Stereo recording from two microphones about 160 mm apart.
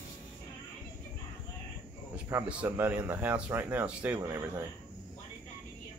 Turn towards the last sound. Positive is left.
turn(degrees=-15)  # may be behind; listen again after turning